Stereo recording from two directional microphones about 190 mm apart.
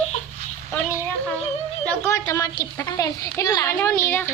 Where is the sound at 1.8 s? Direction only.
10° left (ahead or behind).